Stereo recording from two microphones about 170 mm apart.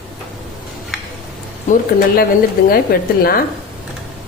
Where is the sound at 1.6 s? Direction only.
55° left (ahead or behind).